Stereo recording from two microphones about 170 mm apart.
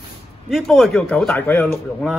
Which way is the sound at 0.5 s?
Centre (ahead or behind).